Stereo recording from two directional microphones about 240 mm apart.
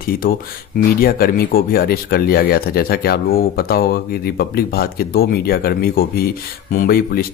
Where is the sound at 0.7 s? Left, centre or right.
Left.